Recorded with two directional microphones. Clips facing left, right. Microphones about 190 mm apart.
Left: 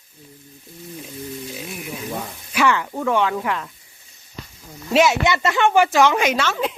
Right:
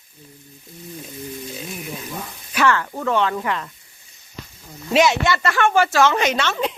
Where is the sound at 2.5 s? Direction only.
15° left (ahead or behind).